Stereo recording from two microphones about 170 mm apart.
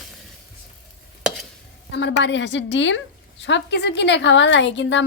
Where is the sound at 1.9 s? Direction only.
90° left.